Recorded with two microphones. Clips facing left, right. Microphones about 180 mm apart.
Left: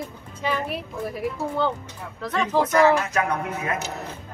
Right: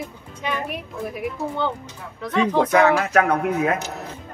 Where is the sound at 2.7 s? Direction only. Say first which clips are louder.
Right 2 dB; 60° right (ahead or behind).